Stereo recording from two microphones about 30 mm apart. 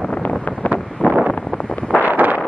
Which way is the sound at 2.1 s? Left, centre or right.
Right.